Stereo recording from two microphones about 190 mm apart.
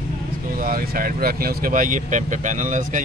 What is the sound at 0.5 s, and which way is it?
Speech, 50° right (ahead or behind).